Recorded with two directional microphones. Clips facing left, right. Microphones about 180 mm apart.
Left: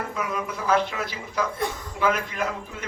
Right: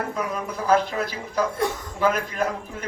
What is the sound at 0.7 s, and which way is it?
A man's voice, 40° right (ahead or behind).